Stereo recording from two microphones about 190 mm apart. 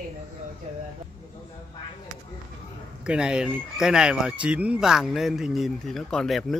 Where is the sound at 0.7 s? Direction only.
40° right (ahead or behind).